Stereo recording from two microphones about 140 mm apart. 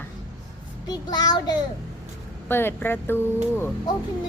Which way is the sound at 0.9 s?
30° left (ahead or behind).